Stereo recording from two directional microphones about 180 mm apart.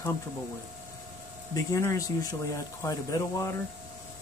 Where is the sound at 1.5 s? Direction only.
20° left (ahead or behind).